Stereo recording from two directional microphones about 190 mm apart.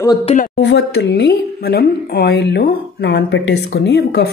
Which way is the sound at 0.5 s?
70° left (ahead or behind).